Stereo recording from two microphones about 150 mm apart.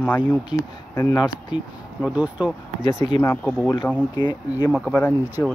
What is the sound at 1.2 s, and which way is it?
Speech, 5° right (ahead or behind).